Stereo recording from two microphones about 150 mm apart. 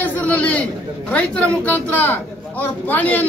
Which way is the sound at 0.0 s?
10° left (ahead or behind).